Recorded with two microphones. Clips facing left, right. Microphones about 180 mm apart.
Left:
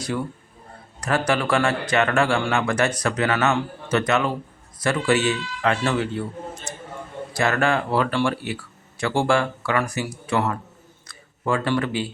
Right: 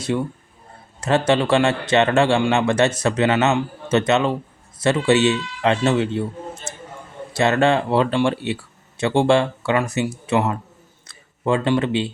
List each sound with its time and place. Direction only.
0.1 s a man's voice: 20° right (ahead or behind)